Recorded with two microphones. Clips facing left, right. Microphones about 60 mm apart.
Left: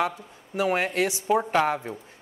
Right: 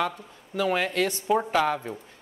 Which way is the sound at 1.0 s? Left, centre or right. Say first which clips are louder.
Left 1 dB; centre.